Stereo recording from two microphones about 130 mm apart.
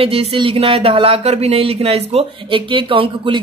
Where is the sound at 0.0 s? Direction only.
45° right (ahead or behind).